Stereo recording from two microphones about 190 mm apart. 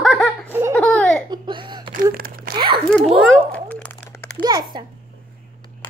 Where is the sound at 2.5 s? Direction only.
25° right (ahead or behind).